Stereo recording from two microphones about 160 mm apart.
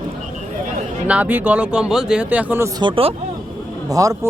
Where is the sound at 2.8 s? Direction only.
35° right (ahead or behind).